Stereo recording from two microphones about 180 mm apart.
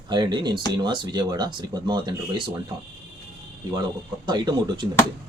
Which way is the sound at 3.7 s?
25° right (ahead or behind).